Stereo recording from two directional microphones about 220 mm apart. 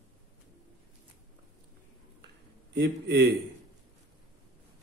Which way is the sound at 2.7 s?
50° right (ahead or behind).